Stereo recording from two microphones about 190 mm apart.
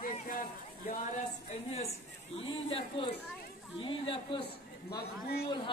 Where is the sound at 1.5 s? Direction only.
35° left (ahead or behind).